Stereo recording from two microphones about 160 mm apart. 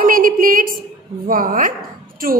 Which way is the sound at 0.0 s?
60° right (ahead or behind).